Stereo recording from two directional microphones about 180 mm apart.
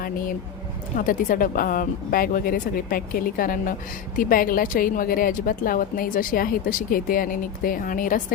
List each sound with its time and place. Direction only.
0.9 s a woman's voice: 50° left (ahead or behind)